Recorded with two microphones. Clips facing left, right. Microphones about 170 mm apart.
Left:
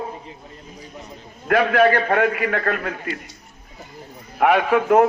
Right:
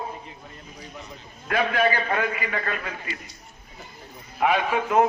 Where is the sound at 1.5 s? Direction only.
60° left (ahead or behind).